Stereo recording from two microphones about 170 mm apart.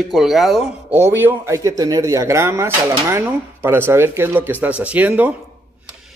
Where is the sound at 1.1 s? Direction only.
15° right (ahead or behind).